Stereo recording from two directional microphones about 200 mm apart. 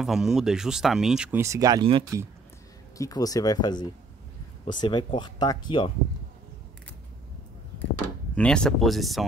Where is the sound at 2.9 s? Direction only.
15° left (ahead or behind).